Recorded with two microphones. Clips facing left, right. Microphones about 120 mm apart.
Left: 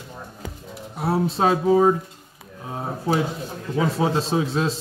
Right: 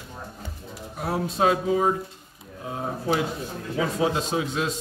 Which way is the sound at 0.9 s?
30° left (ahead or behind).